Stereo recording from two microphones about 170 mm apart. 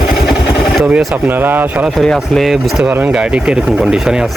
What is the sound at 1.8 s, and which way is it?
Speech, centre (ahead or behind).